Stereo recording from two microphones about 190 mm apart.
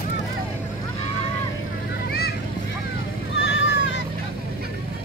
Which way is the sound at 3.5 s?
70° left (ahead or behind).